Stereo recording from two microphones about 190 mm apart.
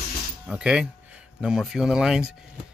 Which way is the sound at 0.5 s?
5° right (ahead or behind).